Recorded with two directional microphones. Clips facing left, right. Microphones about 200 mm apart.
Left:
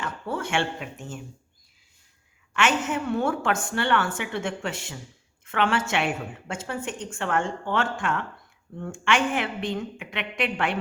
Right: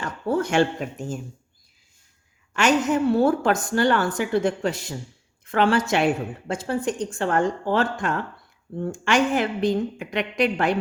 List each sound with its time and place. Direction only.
0.0 s speech: 40° right (ahead or behind)
2.5 s a woman's voice: 40° right (ahead or behind)